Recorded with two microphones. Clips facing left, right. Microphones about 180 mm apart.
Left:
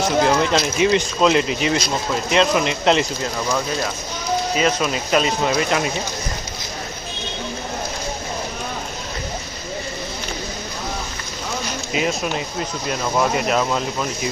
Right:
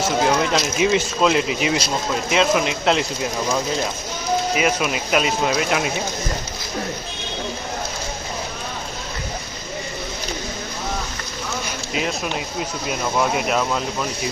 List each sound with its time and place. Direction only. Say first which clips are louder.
0.5 s speech: left 1 dB; 5° right (ahead or behind)
3.3 s speech: right 1 dB; 20° right (ahead or behind)
4.5 s speech: left 1 dB; 10° right (ahead or behind)
11.9 s speech: left 3 dB; centre (ahead or behind)